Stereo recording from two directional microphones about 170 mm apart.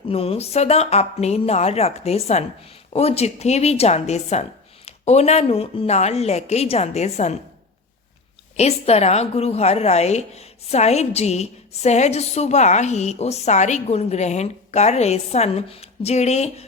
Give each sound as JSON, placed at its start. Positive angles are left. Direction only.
{"t": 0.1, "sound": "a woman's voice", "side_deg": 35}
{"t": 8.5, "sound": "a woman's voice", "side_deg": 40}